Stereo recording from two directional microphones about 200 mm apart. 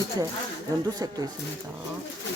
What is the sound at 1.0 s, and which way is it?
Speech, 20° right (ahead or behind).